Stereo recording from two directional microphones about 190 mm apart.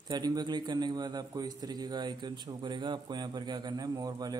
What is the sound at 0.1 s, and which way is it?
A man's voice, 20° right (ahead or behind).